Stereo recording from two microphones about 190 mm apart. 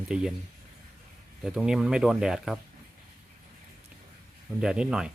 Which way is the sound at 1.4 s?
5° right (ahead or behind).